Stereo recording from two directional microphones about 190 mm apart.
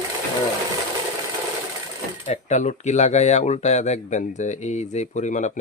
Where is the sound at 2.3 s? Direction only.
35° left (ahead or behind).